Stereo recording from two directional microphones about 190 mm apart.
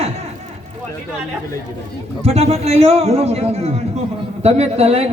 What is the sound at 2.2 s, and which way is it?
A man's voice, 35° right (ahead or behind).